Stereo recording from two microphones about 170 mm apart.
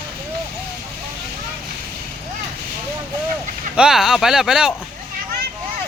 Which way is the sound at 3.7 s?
5° right (ahead or behind).